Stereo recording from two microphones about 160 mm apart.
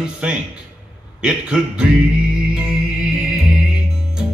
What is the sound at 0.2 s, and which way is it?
A man's voice, 5° right (ahead or behind).